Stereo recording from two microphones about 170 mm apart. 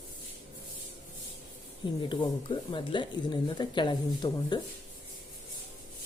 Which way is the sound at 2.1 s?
30° left (ahead or behind).